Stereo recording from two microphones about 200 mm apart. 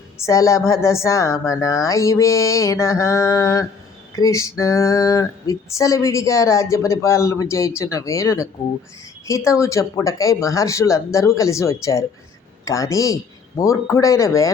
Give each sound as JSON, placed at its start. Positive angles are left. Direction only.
{"t": 0.3, "sound": "female singing", "side_deg": 15}
{"t": 9.5, "sound": "female singing", "side_deg": 15}